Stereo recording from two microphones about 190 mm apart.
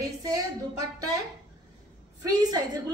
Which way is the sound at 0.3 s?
20° right (ahead or behind).